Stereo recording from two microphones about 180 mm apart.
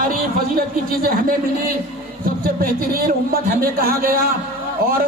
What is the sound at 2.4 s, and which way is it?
A man's voice, 55° right (ahead or behind).